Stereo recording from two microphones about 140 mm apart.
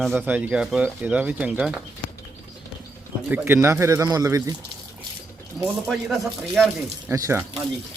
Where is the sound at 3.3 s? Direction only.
15° right (ahead or behind).